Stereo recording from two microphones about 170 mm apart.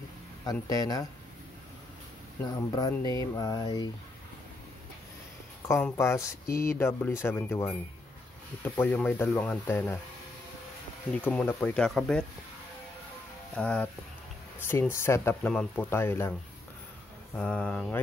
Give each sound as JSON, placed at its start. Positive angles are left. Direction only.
{"t": 0.5, "sound": "speech", "side_deg": 20}
{"t": 2.7, "sound": "speech", "side_deg": 25}
{"t": 5.7, "sound": "speech", "side_deg": 10}
{"t": 11.1, "sound": "speech", "side_deg": 10}
{"t": 13.6, "sound": "speech", "side_deg": 5}
{"t": 17.4, "sound": "speech", "side_deg": 5}